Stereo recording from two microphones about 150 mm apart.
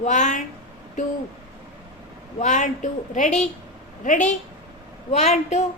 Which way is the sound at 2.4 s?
55° left (ahead or behind).